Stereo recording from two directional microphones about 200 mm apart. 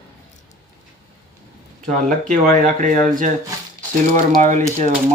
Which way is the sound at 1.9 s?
40° right (ahead or behind).